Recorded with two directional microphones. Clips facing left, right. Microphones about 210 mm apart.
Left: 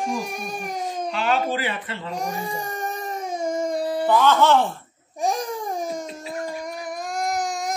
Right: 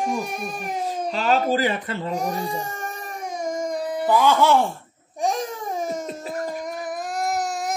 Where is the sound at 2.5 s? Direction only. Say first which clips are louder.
Left 1 dB; 15° left (ahead or behind).